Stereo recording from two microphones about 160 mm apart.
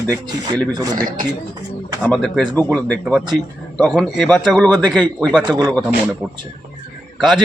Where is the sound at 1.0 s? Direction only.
60° right (ahead or behind).